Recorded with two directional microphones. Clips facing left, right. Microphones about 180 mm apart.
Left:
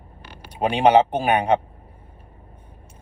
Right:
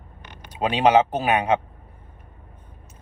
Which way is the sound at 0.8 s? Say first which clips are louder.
Left 2 dB; 30° left (ahead or behind).